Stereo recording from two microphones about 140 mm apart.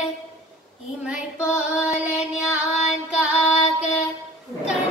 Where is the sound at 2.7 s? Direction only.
50° left (ahead or behind).